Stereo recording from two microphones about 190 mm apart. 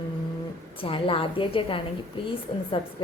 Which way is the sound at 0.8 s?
30° left (ahead or behind).